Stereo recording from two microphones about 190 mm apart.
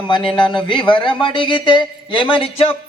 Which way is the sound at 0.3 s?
25° left (ahead or behind).